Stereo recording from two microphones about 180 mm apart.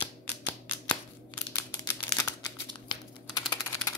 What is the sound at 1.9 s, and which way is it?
Crumpling, 20° left (ahead or behind).